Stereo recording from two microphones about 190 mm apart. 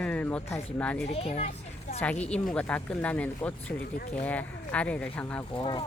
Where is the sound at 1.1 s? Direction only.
35° left (ahead or behind).